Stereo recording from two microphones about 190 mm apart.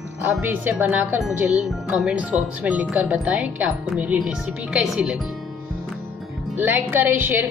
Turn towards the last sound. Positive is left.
turn(degrees=-10)  # may be behind; listen again after turning